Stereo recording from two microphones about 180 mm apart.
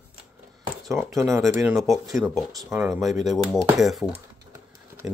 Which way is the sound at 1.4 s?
Centre (ahead or behind).